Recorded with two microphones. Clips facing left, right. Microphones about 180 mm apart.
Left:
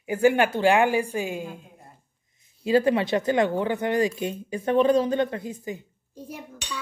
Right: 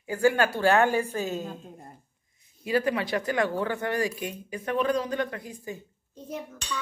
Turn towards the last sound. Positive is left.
turn(degrees=10)  # may be behind; listen again after turning